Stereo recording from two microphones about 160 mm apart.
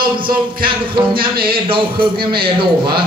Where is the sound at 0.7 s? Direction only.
35° right (ahead or behind).